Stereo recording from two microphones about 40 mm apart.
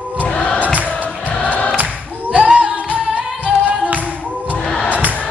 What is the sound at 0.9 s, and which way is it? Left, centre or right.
Music, left.